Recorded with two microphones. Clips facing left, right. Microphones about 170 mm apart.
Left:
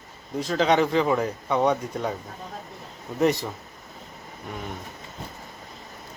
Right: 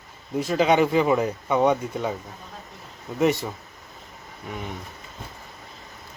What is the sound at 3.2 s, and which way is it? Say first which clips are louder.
Speech: right 1 dB; centre (ahead or behind).